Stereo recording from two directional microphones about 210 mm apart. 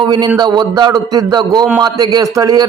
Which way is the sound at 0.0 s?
20° right (ahead or behind).